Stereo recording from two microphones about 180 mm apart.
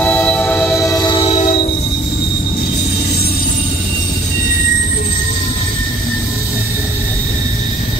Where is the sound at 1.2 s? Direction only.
40° left (ahead or behind).